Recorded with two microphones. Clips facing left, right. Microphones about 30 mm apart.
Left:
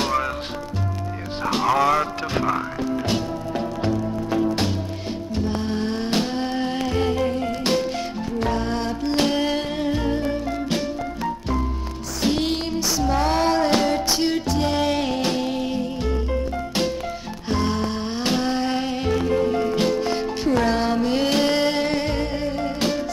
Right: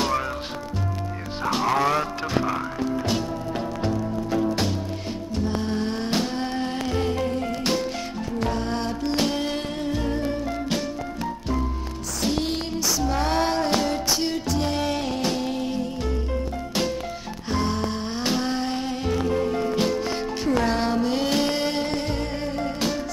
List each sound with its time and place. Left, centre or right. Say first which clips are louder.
1.4 s music: left 2 dB; centre
12.2 s music: left 3 dB; left
17.5 s music: left 2 dB; centre